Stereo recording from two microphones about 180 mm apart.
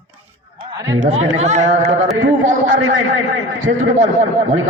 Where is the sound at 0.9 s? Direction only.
40° right (ahead or behind).